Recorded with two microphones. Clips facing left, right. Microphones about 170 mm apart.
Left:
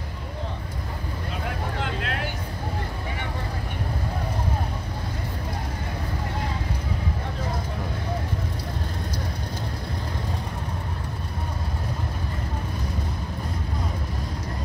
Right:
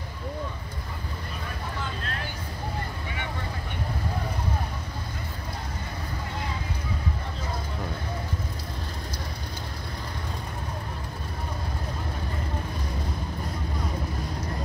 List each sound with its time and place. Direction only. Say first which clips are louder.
1.8 s vehicle: left 5 dB; 75° left (ahead or behind)